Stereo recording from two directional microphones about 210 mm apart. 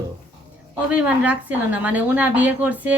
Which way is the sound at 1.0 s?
5° right (ahead or behind).